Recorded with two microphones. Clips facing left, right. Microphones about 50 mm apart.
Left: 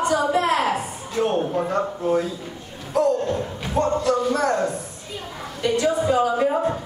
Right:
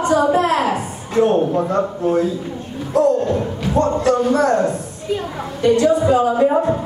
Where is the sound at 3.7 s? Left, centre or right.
Right.